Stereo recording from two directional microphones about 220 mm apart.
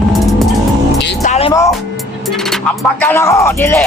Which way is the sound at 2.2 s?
Centre (ahead or behind).